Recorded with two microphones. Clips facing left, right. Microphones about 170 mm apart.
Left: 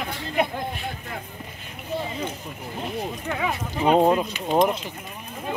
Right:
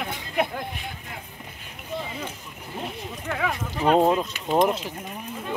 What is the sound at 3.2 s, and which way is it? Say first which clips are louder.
Speech: right 3 dB; 5° left (ahead or behind).